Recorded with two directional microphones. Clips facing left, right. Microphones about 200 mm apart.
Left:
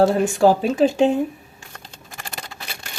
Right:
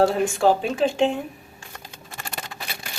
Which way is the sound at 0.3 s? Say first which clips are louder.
Left 6 dB; 40° left (ahead or behind).